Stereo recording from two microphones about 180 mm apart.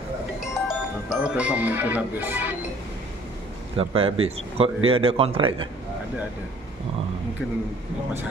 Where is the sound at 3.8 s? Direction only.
30° right (ahead or behind).